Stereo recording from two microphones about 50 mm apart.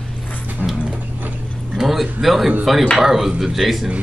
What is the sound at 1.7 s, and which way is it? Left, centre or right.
A man's voice, centre.